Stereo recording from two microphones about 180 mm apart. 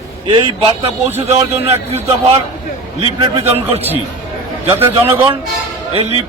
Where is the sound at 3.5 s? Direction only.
35° right (ahead or behind).